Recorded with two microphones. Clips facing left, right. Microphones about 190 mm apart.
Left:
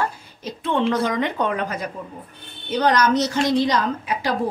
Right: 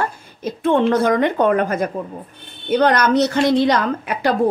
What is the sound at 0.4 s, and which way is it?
A woman's voice, 50° right (ahead or behind).